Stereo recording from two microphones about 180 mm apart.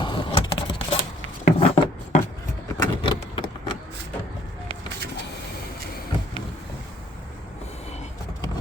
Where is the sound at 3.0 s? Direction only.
25° left (ahead or behind).